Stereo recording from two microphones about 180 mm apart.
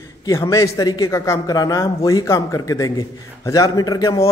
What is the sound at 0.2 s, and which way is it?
A man's voice, 20° left (ahead or behind).